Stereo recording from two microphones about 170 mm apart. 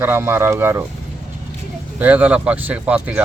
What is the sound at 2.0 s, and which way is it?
Speech, 10° right (ahead or behind).